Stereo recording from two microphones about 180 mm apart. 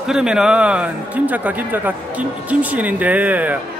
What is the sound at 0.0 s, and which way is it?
Speech, 5° right (ahead or behind).